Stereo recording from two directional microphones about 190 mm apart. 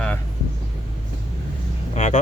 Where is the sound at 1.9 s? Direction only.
40° left (ahead or behind).